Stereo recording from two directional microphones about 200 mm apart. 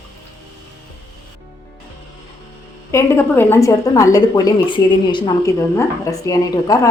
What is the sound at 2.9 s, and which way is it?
A woman's voice, 15° left (ahead or behind).